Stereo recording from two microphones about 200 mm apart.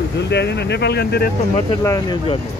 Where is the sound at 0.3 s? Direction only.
55° left (ahead or behind).